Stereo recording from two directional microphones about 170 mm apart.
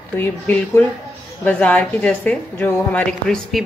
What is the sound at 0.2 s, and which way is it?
A woman's voice, 10° left (ahead or behind).